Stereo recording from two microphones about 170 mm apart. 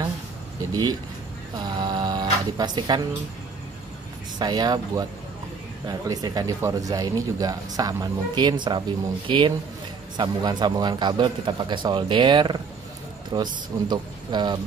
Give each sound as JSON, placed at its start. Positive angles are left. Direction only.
{"t": 0.6, "sound": "speech", "side_deg": -20}
{"t": 4.4, "sound": "speech", "side_deg": -25}